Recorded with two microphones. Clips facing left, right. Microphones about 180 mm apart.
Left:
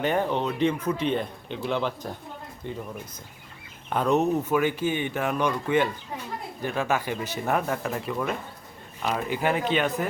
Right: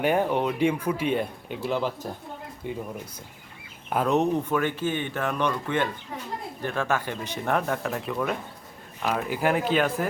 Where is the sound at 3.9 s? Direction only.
Centre (ahead or behind).